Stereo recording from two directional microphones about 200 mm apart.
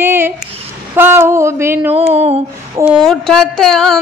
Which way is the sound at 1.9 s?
30° right (ahead or behind).